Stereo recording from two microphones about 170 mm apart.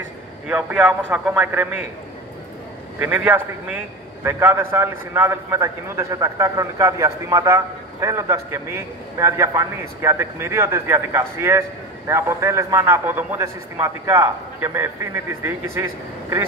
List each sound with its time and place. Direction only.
0.5 s a man's voice: 5° right (ahead or behind)
3.0 s a man's voice: 10° right (ahead or behind)